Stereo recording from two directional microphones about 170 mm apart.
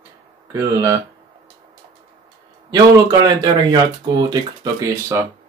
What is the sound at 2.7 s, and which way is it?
Speech, 25° right (ahead or behind).